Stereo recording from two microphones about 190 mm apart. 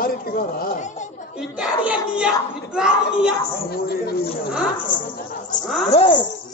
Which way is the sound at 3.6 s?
55° left (ahead or behind).